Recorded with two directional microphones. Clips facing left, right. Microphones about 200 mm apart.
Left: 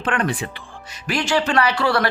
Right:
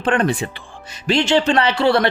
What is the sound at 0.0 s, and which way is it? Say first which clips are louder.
Speech: right 4 dB; 25° right (ahead or behind).